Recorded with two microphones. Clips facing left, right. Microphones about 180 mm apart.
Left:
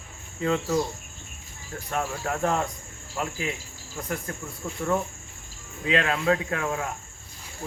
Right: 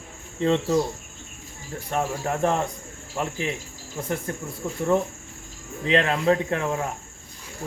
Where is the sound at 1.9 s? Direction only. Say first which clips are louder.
Right 3 dB; 30° right (ahead or behind).